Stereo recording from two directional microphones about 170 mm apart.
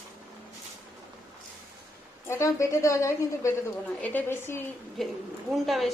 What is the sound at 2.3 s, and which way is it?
A woman's voice, 15° left (ahead or behind).